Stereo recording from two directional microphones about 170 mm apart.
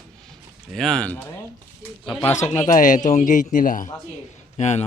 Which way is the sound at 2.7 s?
50° left (ahead or behind).